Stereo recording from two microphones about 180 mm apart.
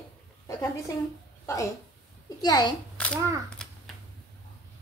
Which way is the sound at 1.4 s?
15° left (ahead or behind).